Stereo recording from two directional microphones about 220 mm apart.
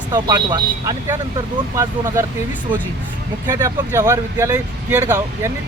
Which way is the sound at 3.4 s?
15° right (ahead or behind).